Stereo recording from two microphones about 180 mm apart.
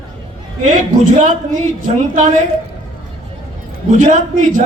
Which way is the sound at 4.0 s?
45° right (ahead or behind).